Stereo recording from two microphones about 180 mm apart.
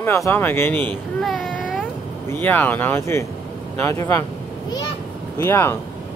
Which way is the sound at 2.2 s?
10° left (ahead or behind).